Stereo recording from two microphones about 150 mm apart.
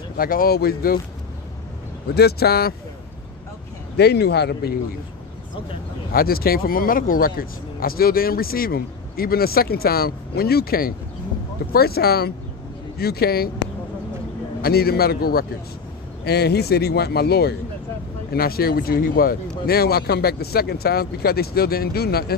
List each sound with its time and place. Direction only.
0.2 s speech: 75° left (ahead or behind); by 0.9 s 90° left
2.1 s speech: 90° left
3.9 s speech: 90° left
6.1 s speech: 85° left
14.6 s speech: 90° left